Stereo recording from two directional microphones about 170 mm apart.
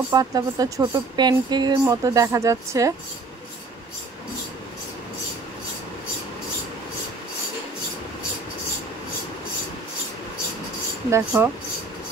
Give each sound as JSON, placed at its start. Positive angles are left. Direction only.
{"t": 0.1, "sound": "speech", "side_deg": -20}
{"t": 11.1, "sound": "speech", "side_deg": -15}